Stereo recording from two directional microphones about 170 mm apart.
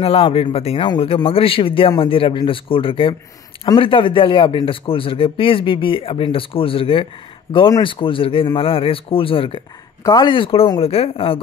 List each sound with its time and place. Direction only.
0.0 s speech: 35° left (ahead or behind)